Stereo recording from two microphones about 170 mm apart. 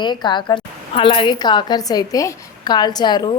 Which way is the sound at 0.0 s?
25° left (ahead or behind).